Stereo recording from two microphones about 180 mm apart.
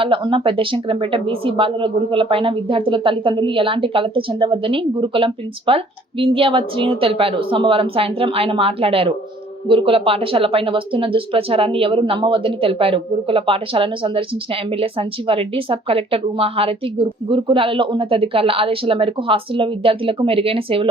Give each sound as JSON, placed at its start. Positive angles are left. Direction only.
{"t": 0.0, "sound": "speech", "side_deg": -30}